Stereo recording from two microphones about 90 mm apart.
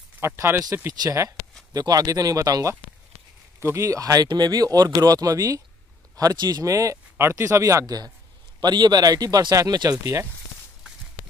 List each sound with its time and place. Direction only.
0.2 s speech: 30° right (ahead or behind)